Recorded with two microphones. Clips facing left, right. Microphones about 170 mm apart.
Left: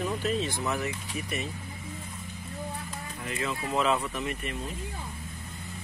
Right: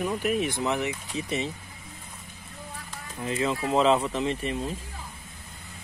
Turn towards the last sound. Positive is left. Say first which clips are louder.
# right 6 dB
turn(degrees=-30)  # may be behind; listen again after turning